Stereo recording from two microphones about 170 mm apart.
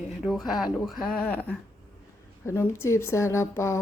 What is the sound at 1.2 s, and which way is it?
A woman's voice, 10° left (ahead or behind).